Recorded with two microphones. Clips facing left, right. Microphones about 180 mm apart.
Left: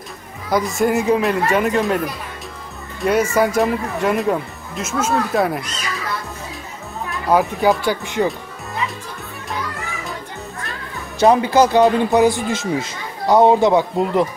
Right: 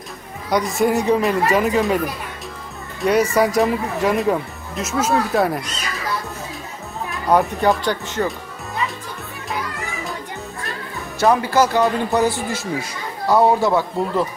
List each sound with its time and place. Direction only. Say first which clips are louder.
0.5 s speech: even; centre (ahead or behind)
7.1 s speech: even; centre (ahead or behind)
8.3 s music: left 2 dB; centre (ahead or behind)
11.1 s speech: left 3 dB; 20° left (ahead or behind)